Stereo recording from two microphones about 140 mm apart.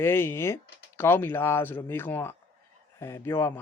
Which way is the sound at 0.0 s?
15° left (ahead or behind).